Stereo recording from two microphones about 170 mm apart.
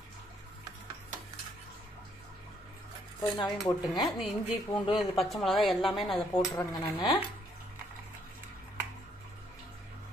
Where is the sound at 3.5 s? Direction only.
Centre (ahead or behind).